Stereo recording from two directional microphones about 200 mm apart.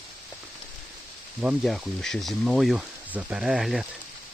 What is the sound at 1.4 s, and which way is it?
Speech, 5° right (ahead or behind).